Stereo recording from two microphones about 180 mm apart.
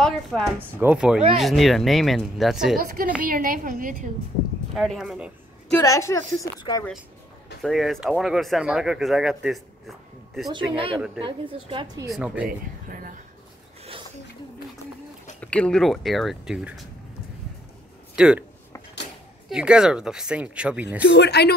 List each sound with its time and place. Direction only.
0.0 s speech: centre (ahead or behind)
3.2 s a woman's voice: 50° right (ahead or behind)
4.7 s speech: centre (ahead or behind)
5.7 s a woman's voice: 15° left (ahead or behind)
7.6 s speech: centre (ahead or behind)
10.5 s a woman's voice: 30° right (ahead or behind)
12.1 s speech: 5° right (ahead or behind)
12.4 s a woman's voice: 50° right (ahead or behind)
15.4 s speech: 5° left (ahead or behind)
18.1 s speech: 5° right (ahead or behind)
19.5 s speech: 5° right (ahead or behind)
21.0 s speech: 75° left (ahead or behind)